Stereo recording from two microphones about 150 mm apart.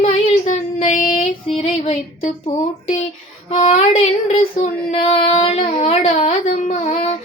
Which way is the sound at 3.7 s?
45° left (ahead or behind).